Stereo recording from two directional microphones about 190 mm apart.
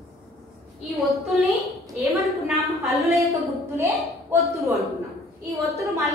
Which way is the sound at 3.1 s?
15° right (ahead or behind).